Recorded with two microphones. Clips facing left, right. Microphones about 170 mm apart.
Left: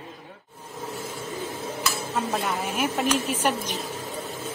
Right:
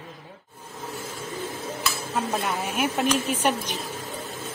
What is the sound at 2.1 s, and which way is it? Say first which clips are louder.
A woman's voice: right 1 dB; centre (ahead or behind).